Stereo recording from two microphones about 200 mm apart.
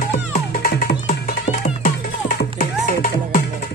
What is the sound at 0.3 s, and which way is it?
Music, 45° left (ahead or behind).